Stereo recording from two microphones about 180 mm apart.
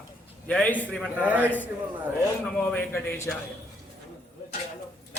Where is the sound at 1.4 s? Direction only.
10° left (ahead or behind).